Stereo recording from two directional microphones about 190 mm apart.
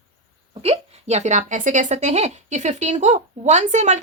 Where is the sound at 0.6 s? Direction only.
35° right (ahead or behind).